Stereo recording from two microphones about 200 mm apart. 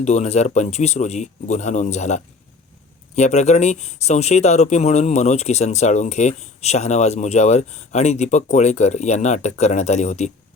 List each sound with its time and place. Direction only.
0.0 s speech: 35° left (ahead or behind)